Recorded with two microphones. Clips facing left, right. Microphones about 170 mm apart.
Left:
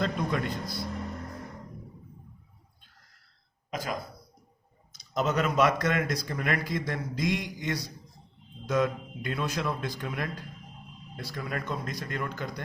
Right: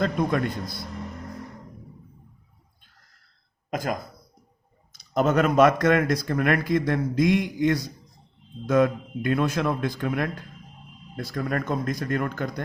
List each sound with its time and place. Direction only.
0.0 s speech: 50° right (ahead or behind)
3.7 s speech: 50° right (ahead or behind)